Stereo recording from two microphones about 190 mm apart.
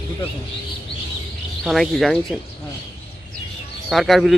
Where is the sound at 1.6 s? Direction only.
Centre (ahead or behind).